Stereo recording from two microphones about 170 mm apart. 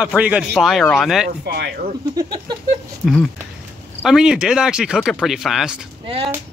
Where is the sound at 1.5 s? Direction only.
70° right (ahead or behind).